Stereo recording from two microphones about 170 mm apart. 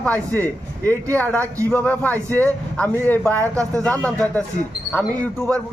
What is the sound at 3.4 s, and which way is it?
Speech, 20° right (ahead or behind).